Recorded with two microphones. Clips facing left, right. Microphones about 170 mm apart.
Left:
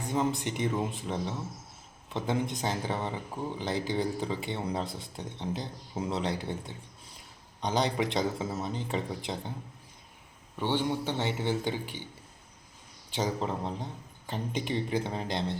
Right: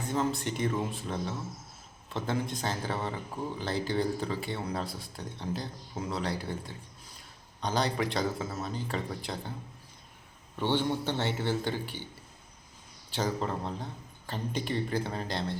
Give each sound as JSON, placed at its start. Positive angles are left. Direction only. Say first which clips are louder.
{"t": 0.0, "sound": "speech", "louder": "left 1 dB", "side_deg": 15}
{"t": 10.6, "sound": "speech", "louder": "even", "side_deg": 10}
{"t": 13.1, "sound": "speech", "louder": "even", "side_deg": 15}